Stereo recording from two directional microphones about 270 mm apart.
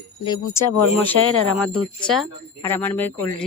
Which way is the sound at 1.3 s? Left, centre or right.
Left.